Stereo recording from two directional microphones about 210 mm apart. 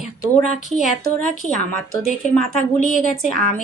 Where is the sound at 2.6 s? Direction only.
40° left (ahead or behind).